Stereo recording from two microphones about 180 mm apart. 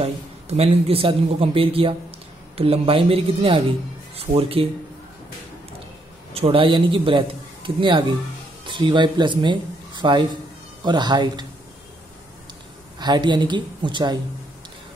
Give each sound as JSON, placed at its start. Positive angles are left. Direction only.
{"t": 0.0, "sound": "a man's voice", "side_deg": -35}
{"t": 6.3, "sound": "a man's voice", "side_deg": -30}
{"t": 13.0, "sound": "a woman's voice", "side_deg": -25}